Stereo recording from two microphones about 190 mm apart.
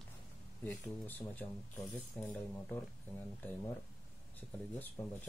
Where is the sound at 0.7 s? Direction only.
10° left (ahead or behind).